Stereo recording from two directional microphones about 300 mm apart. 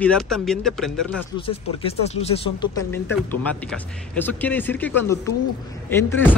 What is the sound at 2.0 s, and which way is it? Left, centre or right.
Speech, centre.